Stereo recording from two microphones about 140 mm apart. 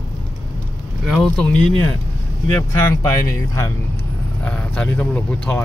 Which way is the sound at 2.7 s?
20° left (ahead or behind).